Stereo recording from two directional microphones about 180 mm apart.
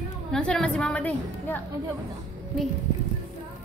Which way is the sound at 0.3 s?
5° left (ahead or behind).